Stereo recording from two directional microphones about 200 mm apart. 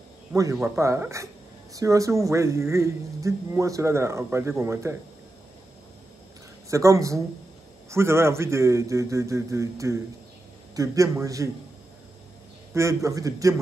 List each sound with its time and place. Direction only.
0.3 s a man's voice: 15° right (ahead or behind)
6.7 s speech: 15° right (ahead or behind)
12.7 s speech: 15° right (ahead or behind)